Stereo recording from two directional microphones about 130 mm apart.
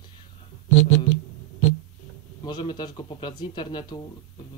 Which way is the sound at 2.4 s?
35° left (ahead or behind).